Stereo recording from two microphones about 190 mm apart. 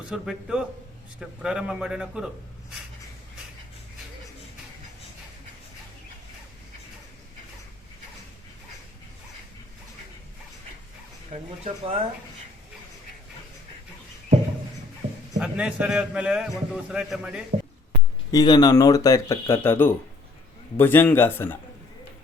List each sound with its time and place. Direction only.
0.1 s a man's voice: 5° right (ahead or behind)
11.3 s speech: 30° right (ahead or behind)
15.4 s a man's voice: 5° right (ahead or behind)
18.3 s speech: 20° left (ahead or behind)